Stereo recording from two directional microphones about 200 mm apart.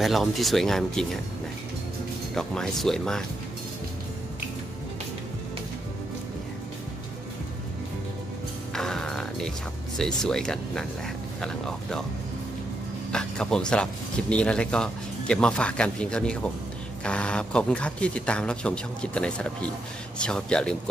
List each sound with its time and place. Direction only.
0.0 s speech: centre (ahead or behind)
2.3 s speech: 5° left (ahead or behind)
8.7 s music: 5° left (ahead or behind)
9.9 s speech: centre (ahead or behind)
13.1 s speech: 5° left (ahead or behind)